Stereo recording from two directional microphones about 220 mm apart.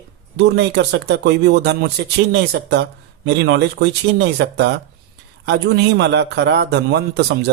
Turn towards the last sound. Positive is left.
turn(degrees=-50)  # may be behind; listen again after turning